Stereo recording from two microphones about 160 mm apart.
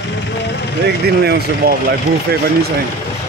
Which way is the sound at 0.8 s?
90° right.